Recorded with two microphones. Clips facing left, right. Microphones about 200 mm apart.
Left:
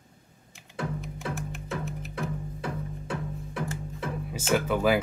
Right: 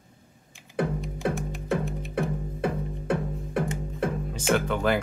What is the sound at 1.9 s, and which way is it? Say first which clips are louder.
Music: right 3 dB; centre (ahead or behind).